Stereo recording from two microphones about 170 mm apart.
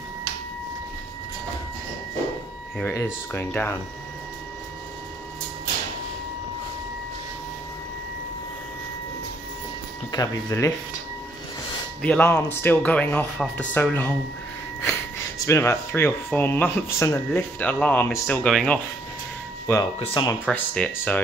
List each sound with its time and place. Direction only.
2.8 s speech: 15° left (ahead or behind)
10.1 s speech: 20° left (ahead or behind)
12.0 s speech: 10° left (ahead or behind)
15.3 s speech: 15° left (ahead or behind)